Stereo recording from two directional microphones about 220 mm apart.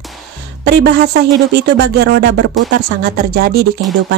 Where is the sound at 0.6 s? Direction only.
50° right (ahead or behind).